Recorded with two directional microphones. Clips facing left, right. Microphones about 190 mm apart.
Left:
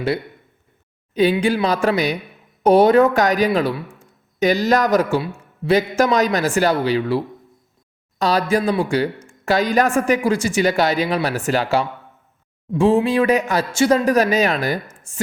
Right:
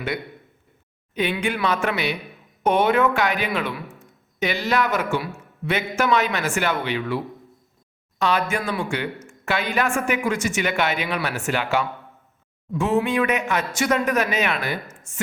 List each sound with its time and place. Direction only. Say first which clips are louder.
1.1 s speech: left 8 dB; 35° left (ahead or behind)
8.2 s speech: left 5 dB; 35° left (ahead or behind)